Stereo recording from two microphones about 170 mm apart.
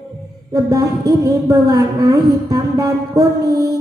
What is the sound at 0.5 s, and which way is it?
A woman's voice, 20° right (ahead or behind).